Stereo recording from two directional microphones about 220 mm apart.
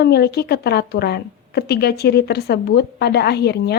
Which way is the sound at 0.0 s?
45° left (ahead or behind).